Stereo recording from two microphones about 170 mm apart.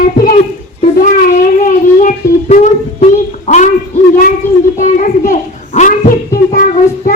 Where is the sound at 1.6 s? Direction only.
50° left (ahead or behind).